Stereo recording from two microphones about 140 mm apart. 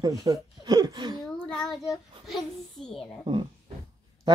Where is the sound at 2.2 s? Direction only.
Centre (ahead or behind).